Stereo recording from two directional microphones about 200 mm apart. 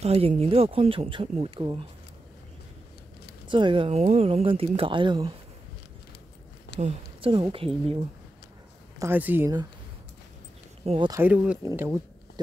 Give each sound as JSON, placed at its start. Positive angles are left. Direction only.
{"t": 0.0, "sound": "speech", "side_deg": -30}
{"t": 3.4, "sound": "speech", "side_deg": -25}
{"t": 6.8, "sound": "speech", "side_deg": -30}
{"t": 9.0, "sound": "speech", "side_deg": -10}
{"t": 10.9, "sound": "speech", "side_deg": -25}
{"t": 11.1, "sound": "speech", "side_deg": -10}